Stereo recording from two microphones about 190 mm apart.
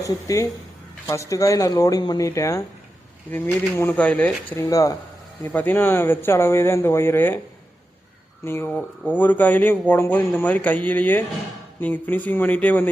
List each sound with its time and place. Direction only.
0.0 s speech: 15° left (ahead or behind)
8.4 s speech: 10° left (ahead or behind)